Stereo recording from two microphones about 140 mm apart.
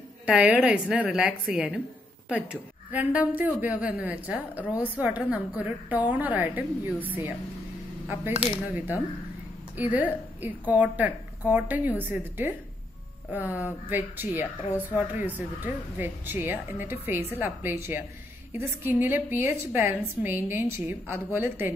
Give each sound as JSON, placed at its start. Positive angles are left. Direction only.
{"t": 0.3, "sound": "a woman's voice", "side_deg": -5}
{"t": 8.4, "sound": "a woman's voice", "side_deg": -10}